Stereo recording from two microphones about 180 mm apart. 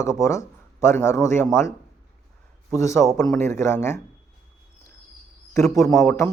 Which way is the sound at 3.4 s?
15° left (ahead or behind).